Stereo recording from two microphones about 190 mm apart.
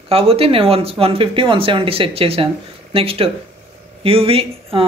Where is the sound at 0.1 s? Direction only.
30° right (ahead or behind).